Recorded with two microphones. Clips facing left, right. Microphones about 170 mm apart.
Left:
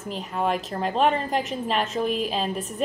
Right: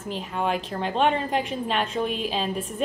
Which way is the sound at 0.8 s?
Centre (ahead or behind).